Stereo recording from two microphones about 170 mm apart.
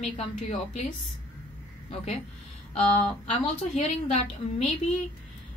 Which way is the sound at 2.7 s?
40° left (ahead or behind).